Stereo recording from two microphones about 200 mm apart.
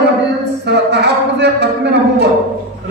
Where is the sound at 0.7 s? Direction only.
55° right (ahead or behind).